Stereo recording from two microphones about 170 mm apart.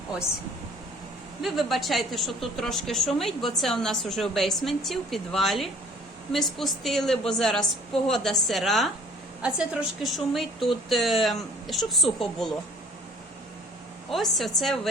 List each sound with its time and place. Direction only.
1.4 s a woman's voice: centre (ahead or behind)
14.1 s a woman's voice: centre (ahead or behind)